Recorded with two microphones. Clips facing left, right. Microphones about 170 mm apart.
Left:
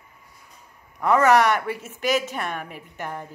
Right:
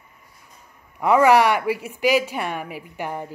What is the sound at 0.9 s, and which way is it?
A woman's voice, 10° right (ahead or behind).